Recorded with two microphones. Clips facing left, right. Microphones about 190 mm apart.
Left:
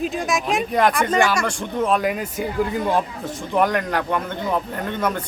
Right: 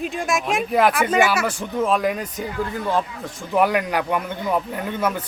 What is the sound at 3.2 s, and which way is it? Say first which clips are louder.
A man's voice: even; 5° right (ahead or behind).